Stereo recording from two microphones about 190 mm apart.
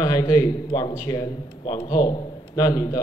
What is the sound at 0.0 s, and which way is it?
A man's voice, 20° left (ahead or behind).